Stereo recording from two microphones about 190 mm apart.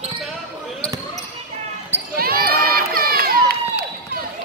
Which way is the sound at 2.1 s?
50° right (ahead or behind).